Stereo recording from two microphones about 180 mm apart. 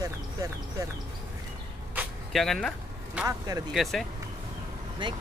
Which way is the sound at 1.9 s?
5° right (ahead or behind).